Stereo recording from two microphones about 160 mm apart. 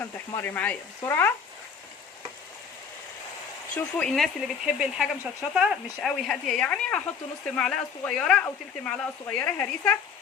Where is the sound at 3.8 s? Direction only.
10° left (ahead or behind).